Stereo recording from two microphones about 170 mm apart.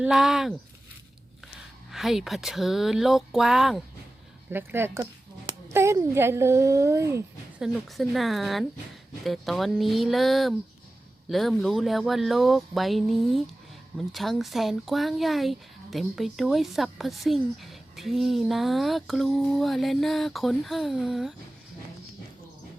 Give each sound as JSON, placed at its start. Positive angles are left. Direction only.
{"t": 0.0, "sound": "speech", "side_deg": 0}
{"t": 1.9, "sound": "speech", "side_deg": 0}
{"t": 4.5, "sound": "speech", "side_deg": -15}
{"t": 7.6, "sound": "speech", "side_deg": 0}